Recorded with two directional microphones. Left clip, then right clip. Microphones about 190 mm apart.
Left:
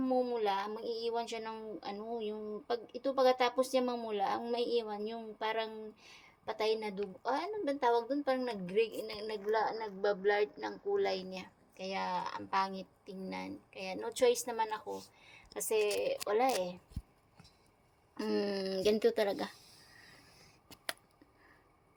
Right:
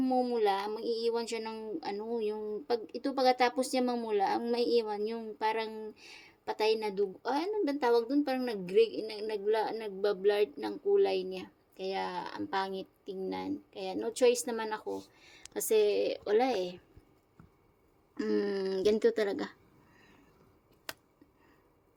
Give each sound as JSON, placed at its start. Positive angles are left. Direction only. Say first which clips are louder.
{"t": 0.0, "sound": "speech", "louder": "right 3 dB", "side_deg": -40}
{"t": 18.2, "sound": "speech", "louder": "right 3 dB", "side_deg": -20}